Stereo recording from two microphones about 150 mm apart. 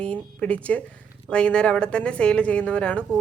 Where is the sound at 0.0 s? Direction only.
10° left (ahead or behind).